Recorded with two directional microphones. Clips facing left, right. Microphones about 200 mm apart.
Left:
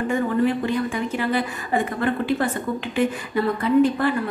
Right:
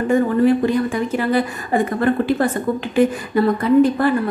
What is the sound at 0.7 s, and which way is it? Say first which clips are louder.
A woman's voice: right 5 dB; 40° right (ahead or behind).